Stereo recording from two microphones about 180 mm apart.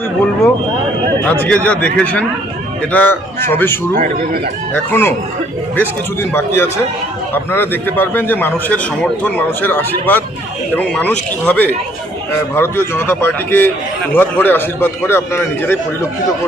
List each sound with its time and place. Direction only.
1.2 s a man's voice: 10° left (ahead or behind)
3.9 s a man's voice: 50° right (ahead or behind)
4.7 s a man's voice: 10° left (ahead or behind)